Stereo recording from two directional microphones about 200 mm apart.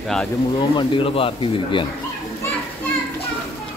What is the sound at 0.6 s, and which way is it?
Speech, 25° left (ahead or behind).